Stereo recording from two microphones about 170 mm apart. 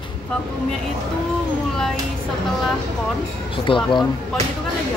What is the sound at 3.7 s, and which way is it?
Speech, 30° left (ahead or behind).